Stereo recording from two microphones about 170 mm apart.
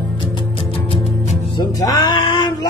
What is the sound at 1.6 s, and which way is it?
Music, 20° left (ahead or behind).